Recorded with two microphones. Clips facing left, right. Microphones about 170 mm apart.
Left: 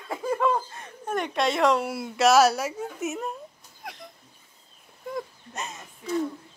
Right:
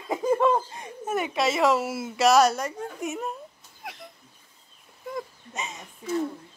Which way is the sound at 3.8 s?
Centre (ahead or behind).